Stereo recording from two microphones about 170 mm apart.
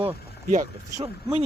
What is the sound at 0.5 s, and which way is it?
Speech, 45° right (ahead or behind).